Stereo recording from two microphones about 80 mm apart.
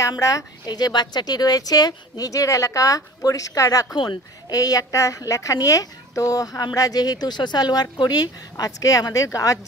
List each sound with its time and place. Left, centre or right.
0.2 s a woman's voice: left
0.7 s a woman's voice: left
3.9 s speech: left
4.5 s a woman's voice: left